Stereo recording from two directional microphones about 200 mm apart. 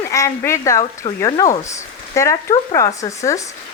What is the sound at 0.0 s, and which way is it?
Speech, 15° left (ahead or behind).